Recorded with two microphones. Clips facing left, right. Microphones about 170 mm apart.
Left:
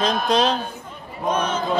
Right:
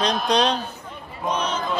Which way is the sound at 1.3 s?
50° left (ahead or behind).